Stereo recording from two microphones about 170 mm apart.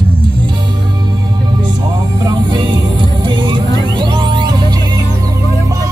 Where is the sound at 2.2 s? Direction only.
25° right (ahead or behind).